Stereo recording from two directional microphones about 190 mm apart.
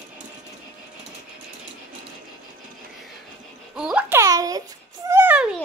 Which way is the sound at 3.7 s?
5° right (ahead or behind).